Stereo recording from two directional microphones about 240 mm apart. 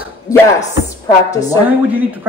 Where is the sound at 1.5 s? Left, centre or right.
Centre.